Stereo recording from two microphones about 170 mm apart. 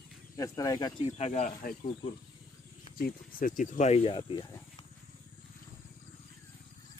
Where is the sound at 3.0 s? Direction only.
55° left (ahead or behind); by 4.5 s 30° left (ahead or behind).